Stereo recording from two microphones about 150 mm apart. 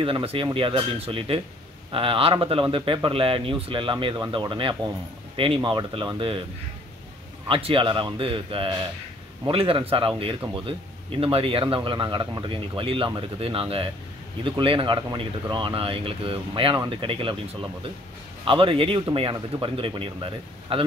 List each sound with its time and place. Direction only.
0.0 s speech: 40° right (ahead or behind)
7.4 s speech: 35° right (ahead or behind)